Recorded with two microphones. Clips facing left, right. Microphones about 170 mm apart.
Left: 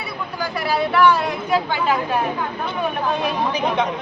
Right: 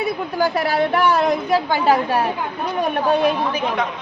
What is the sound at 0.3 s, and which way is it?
A woman's voice, 45° right (ahead or behind).